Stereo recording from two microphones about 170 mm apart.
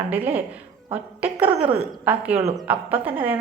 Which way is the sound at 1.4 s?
30° right (ahead or behind).